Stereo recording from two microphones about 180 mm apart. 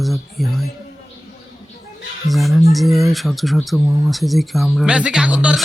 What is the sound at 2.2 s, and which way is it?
Speech, centre (ahead or behind).